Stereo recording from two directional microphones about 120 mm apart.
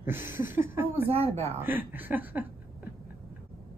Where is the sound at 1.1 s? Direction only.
60° right (ahead or behind).